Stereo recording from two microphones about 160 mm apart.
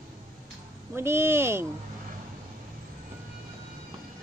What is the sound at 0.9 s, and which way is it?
Speech, 15° right (ahead or behind).